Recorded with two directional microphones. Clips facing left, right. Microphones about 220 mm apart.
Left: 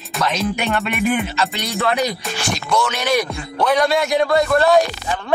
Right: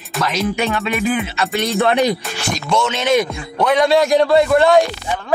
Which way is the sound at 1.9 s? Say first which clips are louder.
Right 4 dB; 25° right (ahead or behind).